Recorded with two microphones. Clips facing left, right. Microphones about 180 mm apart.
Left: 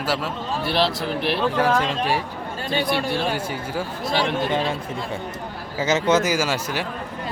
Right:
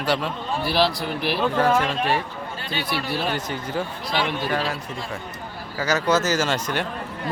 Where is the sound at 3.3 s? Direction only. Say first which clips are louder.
Even; 10° left (ahead or behind).